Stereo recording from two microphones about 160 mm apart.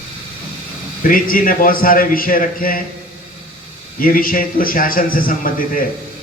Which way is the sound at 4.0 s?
65° left (ahead or behind).